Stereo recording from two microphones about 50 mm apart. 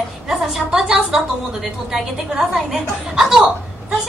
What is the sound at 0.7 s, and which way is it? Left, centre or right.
A woman's voice, centre.